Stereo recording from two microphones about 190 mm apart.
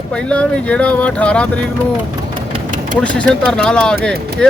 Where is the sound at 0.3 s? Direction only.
5° left (ahead or behind).